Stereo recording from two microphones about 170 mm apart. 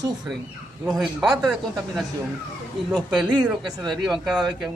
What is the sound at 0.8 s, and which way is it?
Speech, centre (ahead or behind).